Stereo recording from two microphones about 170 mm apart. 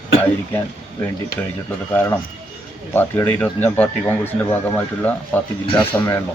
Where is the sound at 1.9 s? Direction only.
10° left (ahead or behind).